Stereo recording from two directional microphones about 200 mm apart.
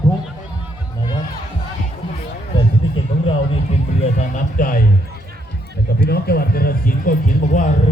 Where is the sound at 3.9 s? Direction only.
40° left (ahead or behind).